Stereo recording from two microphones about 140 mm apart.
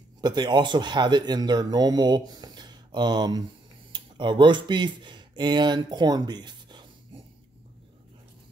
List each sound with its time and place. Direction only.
0.2 s speech: 30° right (ahead or behind)